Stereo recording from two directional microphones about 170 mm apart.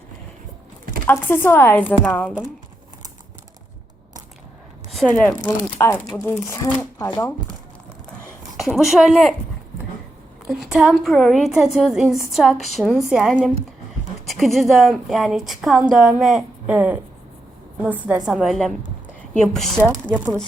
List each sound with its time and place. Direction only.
1.0 s speech: 10° left (ahead or behind)
4.9 s speech: 5° left (ahead or behind)
8.5 s speech: centre (ahead or behind)
10.4 s a woman's voice: centre (ahead or behind)